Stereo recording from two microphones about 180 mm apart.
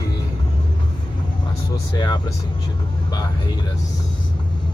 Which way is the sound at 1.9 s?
25° left (ahead or behind).